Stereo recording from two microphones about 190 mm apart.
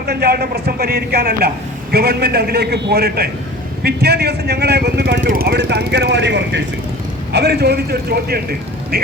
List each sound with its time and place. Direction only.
0.1 s speech: 55° right (ahead or behind)